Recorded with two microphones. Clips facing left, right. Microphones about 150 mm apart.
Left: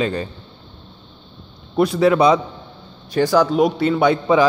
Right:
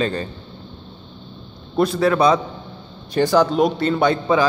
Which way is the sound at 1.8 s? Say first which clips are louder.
Left 2 dB; 15° left (ahead or behind).